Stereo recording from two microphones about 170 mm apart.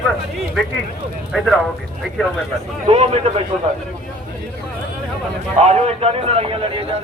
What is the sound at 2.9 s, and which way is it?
Speech, 40° right (ahead or behind).